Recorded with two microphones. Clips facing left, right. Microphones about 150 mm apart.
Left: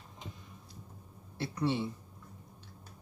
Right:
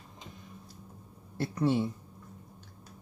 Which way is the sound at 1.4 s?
45° right (ahead or behind).